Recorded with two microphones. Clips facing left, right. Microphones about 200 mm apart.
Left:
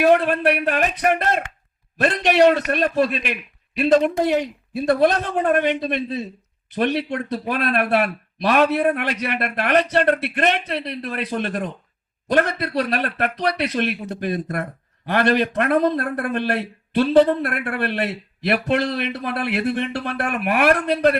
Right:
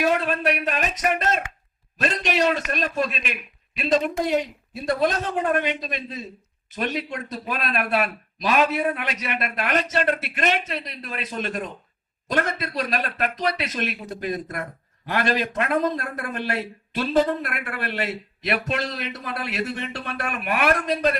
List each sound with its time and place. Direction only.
0.3 s speech: 60° left (ahead or behind)